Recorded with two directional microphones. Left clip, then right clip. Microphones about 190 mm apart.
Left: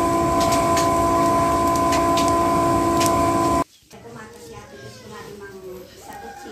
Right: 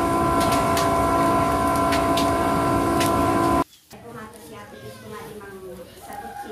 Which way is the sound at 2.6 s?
15° right (ahead or behind).